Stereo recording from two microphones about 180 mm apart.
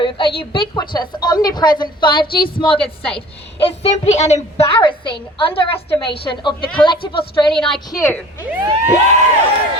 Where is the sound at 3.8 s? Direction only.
40° left (ahead or behind).